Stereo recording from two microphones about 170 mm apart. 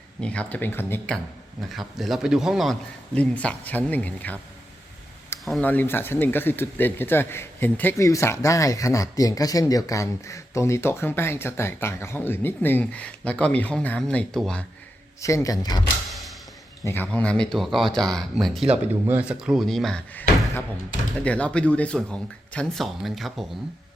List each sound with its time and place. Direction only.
0.2 s speech: 5° left (ahead or behind)
2.0 s speech: centre (ahead or behind)
5.5 s speech: 10° left (ahead or behind)
15.2 s speech: 20° left (ahead or behind)
16.8 s speech: 10° left (ahead or behind)
21.2 s speech: 5° left (ahead or behind)